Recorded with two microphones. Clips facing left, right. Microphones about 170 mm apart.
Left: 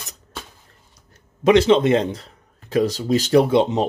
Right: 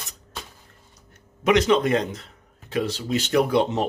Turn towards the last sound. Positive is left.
turn(degrees=20)  # may be behind; listen again after turning